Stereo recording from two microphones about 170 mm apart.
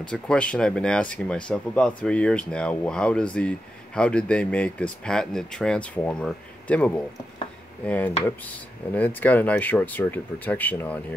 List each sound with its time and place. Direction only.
0.0 s speech: 5° left (ahead or behind)